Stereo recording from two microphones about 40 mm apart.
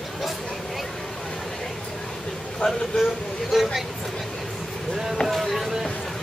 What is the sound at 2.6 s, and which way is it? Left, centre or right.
Speech, left.